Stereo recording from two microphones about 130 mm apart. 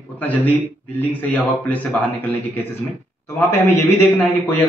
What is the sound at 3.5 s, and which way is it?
A man's voice, 20° left (ahead or behind).